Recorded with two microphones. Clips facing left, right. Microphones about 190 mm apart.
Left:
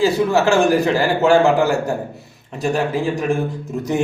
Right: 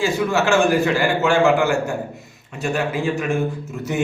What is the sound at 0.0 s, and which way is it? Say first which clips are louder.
A man's voice: left 4 dB; 40° left (ahead or behind).